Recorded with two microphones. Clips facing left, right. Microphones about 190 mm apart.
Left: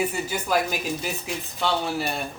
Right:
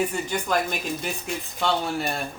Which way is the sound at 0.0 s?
5° left (ahead or behind).